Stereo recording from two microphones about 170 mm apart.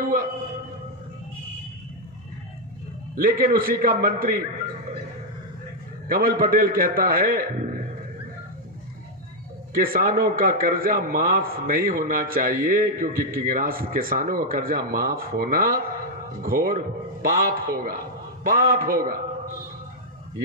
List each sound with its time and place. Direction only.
0.0 s a sound: 55° right (ahead or behind)
3.2 s a man's voice: 60° right (ahead or behind)
6.0 s a man's voice: 55° right (ahead or behind)
9.8 s a man's voice: 55° right (ahead or behind)